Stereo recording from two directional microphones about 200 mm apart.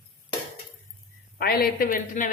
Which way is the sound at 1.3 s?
50° left (ahead or behind).